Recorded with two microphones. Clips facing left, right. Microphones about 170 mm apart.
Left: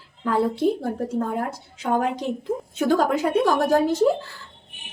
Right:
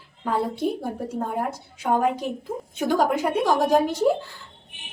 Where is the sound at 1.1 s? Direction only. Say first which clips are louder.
Left 2 dB; 10° right (ahead or behind).